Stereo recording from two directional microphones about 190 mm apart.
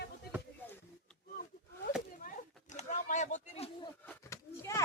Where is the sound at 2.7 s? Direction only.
40° left (ahead or behind).